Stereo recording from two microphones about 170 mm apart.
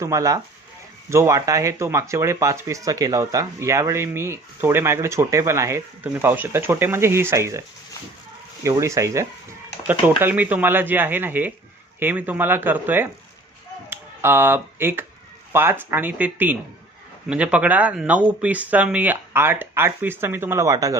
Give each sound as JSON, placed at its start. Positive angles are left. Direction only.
{"t": 0.0, "sound": "speech", "side_deg": -20}
{"t": 8.6, "sound": "speech", "side_deg": -20}